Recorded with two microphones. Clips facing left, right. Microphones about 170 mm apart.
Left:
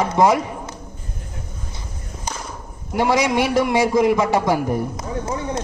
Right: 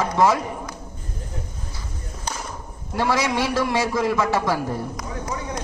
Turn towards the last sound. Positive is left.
turn(degrees=25)  # may be behind; listen again after turning